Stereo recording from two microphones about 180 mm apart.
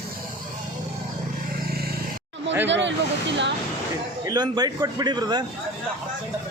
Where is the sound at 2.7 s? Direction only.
80° right.